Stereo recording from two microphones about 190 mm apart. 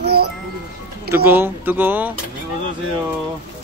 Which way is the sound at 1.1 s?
10° right (ahead or behind).